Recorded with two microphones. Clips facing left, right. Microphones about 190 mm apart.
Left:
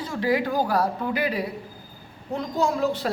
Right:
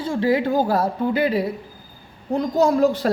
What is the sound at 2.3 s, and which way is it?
Speech, 40° right (ahead or behind).